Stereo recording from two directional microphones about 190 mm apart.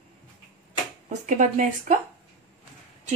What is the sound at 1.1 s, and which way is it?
Speech, 40° right (ahead or behind).